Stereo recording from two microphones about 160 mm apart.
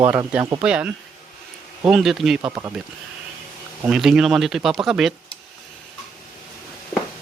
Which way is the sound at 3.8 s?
5° right (ahead or behind).